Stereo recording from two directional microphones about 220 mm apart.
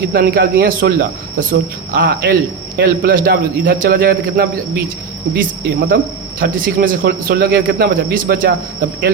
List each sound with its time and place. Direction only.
0.1 s speech: 40° right (ahead or behind)